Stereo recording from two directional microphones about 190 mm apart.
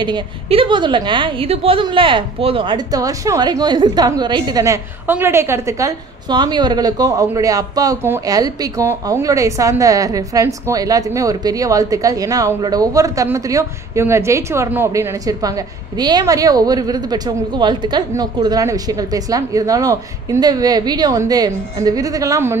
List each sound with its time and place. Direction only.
0.0 s a woman's voice: 25° right (ahead or behind)